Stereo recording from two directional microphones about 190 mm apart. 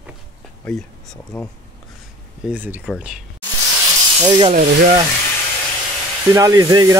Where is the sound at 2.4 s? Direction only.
10° right (ahead or behind).